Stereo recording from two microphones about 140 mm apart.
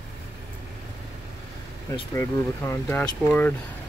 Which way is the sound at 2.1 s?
15° left (ahead or behind).